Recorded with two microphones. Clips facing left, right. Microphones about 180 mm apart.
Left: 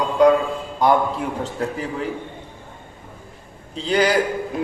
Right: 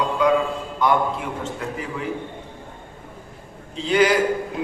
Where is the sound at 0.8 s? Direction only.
35° left (ahead or behind).